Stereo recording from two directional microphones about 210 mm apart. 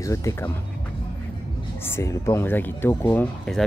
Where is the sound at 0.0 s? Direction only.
15° left (ahead or behind).